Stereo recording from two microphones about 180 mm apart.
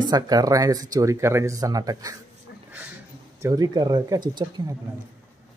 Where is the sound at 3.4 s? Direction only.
20° right (ahead or behind).